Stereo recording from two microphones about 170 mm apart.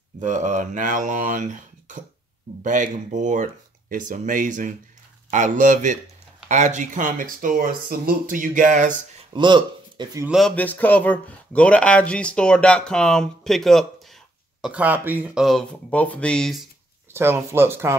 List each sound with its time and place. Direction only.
0.2 s speech: 45° right (ahead or behind)
9.3 s speech: 25° right (ahead or behind)
10.2 s speech: centre (ahead or behind)
10.5 s speech: 10° left (ahead or behind)
17.1 s speech: 15° right (ahead or behind)